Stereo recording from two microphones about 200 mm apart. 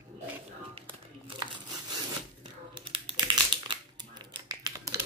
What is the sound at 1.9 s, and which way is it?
Crumpling, 25° right (ahead or behind).